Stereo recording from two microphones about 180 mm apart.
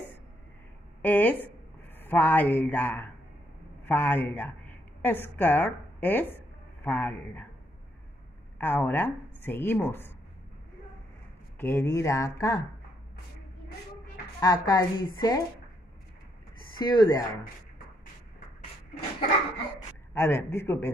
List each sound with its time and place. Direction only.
1.0 s a woman's voice: 10° left (ahead or behind)
8.5 s speech: 10° left (ahead or behind)
11.5 s speech: 10° left (ahead or behind)
14.4 s a woman's voice: 20° left (ahead or behind)
16.7 s speech: 25° left (ahead or behind)
20.2 s speech: 15° left (ahead or behind)